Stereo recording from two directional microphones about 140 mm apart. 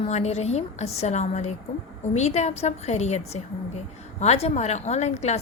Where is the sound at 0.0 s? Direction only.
50° left (ahead or behind).